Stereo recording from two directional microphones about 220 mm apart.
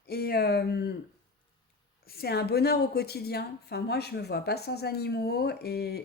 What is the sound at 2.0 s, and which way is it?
A woman's voice, 45° left (ahead or behind).